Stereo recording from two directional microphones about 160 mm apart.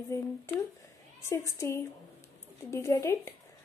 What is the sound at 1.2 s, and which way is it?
Speech, 20° left (ahead or behind).